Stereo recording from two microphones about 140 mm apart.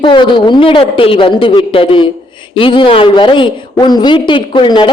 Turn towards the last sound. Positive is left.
turn(degrees=35)  # may be behind; listen again after turning